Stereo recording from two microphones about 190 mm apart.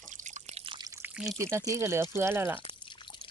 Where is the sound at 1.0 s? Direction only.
5° right (ahead or behind).